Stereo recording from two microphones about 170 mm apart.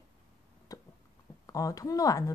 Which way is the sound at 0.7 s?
20° left (ahead or behind).